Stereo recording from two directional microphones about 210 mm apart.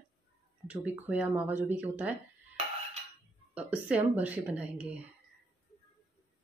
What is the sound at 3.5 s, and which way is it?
Speech, 5° right (ahead or behind).